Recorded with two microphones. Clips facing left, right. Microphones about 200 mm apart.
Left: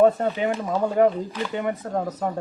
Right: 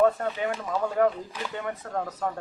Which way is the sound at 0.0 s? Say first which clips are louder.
Left 5 dB; 20° left (ahead or behind).